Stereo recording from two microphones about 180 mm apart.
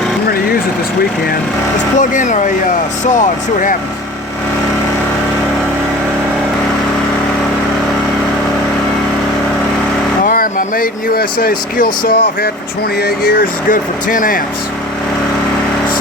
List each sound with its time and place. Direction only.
2.0 s speech: 45° left (ahead or behind)
10.2 s speech: 50° left (ahead or behind)